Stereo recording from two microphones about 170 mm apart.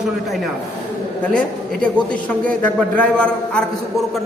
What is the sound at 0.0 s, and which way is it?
A man's voice, centre (ahead or behind).